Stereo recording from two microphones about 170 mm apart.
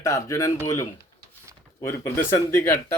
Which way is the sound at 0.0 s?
20° left (ahead or behind).